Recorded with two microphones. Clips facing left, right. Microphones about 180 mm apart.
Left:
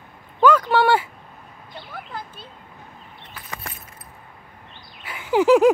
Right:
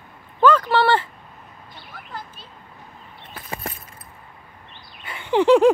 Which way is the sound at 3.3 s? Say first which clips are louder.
Right 5 dB; 30° right (ahead or behind).